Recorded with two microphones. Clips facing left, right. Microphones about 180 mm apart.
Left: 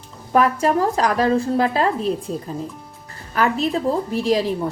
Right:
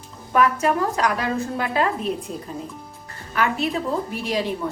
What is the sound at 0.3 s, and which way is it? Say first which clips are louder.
A woman's voice: left 2 dB; 35° left (ahead or behind).